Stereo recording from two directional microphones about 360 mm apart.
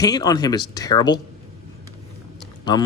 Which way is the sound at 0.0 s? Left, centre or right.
Centre.